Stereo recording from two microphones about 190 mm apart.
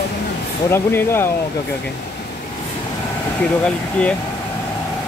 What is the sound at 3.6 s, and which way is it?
Speech, 5° left (ahead or behind).